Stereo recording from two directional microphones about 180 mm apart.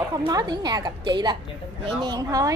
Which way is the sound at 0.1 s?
20° right (ahead or behind).